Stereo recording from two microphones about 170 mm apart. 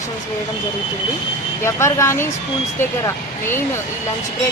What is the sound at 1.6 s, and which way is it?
Speech, 15° left (ahead or behind).